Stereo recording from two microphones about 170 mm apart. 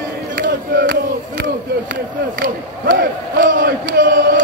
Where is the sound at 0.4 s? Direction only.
65° right (ahead or behind).